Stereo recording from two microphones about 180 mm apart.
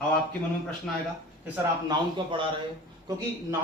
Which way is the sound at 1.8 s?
25° right (ahead or behind).